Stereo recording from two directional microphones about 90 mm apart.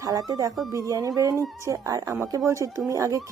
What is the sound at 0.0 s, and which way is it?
Speech, 40° right (ahead or behind).